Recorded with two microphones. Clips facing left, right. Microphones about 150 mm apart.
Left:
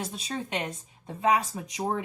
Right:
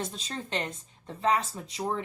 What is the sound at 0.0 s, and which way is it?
Speech, 10° left (ahead or behind).